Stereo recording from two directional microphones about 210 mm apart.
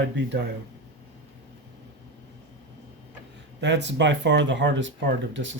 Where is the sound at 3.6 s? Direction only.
55° right (ahead or behind).